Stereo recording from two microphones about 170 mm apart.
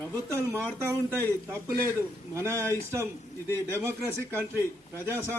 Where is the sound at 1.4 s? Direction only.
15° right (ahead or behind).